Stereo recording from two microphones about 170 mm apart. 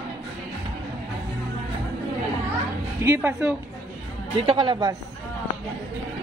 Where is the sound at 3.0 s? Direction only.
10° right (ahead or behind).